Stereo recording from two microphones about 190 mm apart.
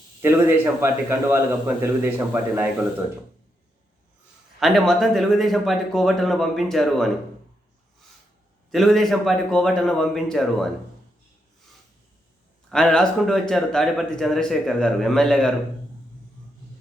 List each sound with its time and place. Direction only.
0.2 s a man's voice: 10° right (ahead or behind)
4.6 s speech: centre (ahead or behind)
8.7 s speech: centre (ahead or behind)
12.7 s speech: 5° left (ahead or behind)